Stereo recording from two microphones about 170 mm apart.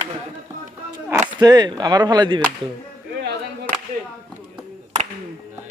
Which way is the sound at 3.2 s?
70° right (ahead or behind).